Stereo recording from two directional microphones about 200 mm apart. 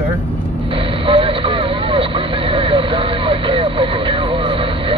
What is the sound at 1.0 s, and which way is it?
Vehicle, 25° right (ahead or behind).